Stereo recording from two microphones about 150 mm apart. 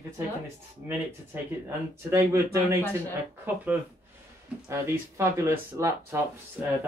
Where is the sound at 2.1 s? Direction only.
15° right (ahead or behind).